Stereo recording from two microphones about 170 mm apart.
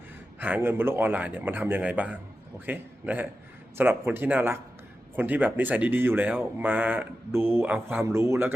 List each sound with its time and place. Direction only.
0.3 s speech: 10° right (ahead or behind)